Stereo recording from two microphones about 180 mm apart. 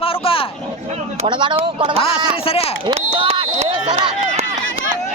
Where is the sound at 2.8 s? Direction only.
30° right (ahead or behind).